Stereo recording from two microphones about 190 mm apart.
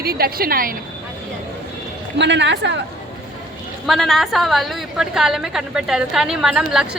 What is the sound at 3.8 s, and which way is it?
A woman's voice, centre (ahead or behind).